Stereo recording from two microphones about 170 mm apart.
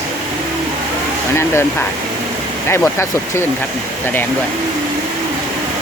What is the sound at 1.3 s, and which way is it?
Speech, 15° left (ahead or behind).